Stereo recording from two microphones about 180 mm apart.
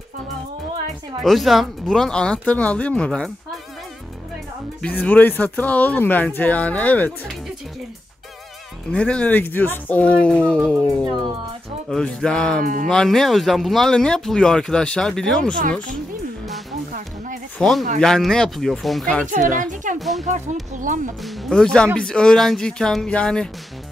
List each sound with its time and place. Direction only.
1.2 s speech: centre (ahead or behind)
4.8 s speech: 10° left (ahead or behind)
8.9 s speech: 5° left (ahead or behind)
17.6 s speech: centre (ahead or behind)
19.5 s a woman's voice: 45° right (ahead or behind)
20.0 s speech: centre (ahead or behind)
20.7 s a woman's voice: 45° right (ahead or behind)
21.2 s speech: centre (ahead or behind)